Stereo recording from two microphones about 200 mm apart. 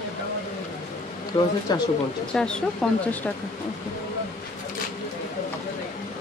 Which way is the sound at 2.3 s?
5° left (ahead or behind).